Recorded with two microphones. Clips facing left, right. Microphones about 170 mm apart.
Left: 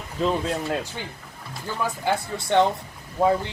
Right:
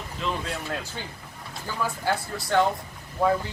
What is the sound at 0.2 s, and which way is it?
Speech, 40° left (ahead or behind).